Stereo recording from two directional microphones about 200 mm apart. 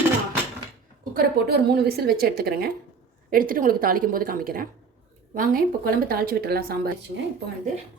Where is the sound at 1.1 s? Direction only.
50° right (ahead or behind).